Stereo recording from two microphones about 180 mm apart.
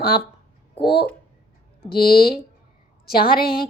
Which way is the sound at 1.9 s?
60° left (ahead or behind).